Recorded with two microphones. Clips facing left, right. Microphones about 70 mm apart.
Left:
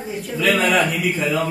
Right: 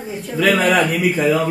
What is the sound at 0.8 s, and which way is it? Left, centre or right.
Speech, right.